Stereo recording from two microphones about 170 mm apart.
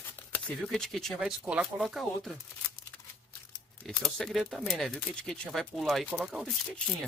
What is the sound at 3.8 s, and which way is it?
Speech, centre (ahead or behind).